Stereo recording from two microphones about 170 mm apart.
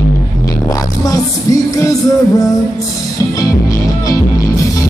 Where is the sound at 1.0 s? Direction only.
20° left (ahead or behind).